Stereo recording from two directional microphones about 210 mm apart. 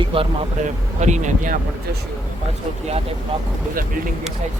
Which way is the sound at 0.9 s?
35° right (ahead or behind).